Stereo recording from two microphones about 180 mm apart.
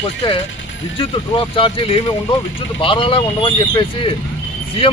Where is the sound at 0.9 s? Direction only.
30° left (ahead or behind).